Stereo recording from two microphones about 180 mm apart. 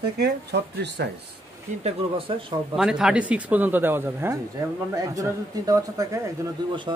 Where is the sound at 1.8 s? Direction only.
35° right (ahead or behind).